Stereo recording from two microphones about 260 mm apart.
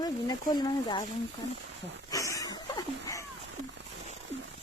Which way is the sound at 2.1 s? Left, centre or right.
Centre.